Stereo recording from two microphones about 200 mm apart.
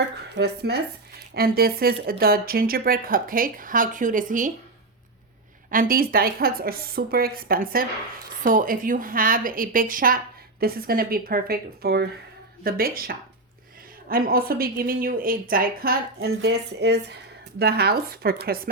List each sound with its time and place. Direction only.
0.3 s a woman's voice: 55° right (ahead or behind)
5.7 s a woman's voice: 45° right (ahead or behind)